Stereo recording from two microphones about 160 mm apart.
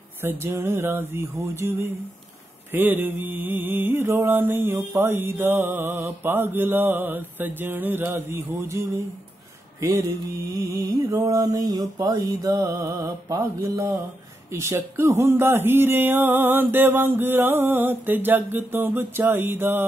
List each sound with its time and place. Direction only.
0.2 s mantra: 15° right (ahead or behind)
2.7 s mantra: 10° right (ahead or behind)
10.5 s mantra: 20° right (ahead or behind)